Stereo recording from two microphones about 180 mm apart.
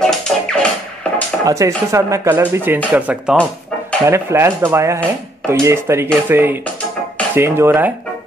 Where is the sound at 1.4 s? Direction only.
15° right (ahead or behind).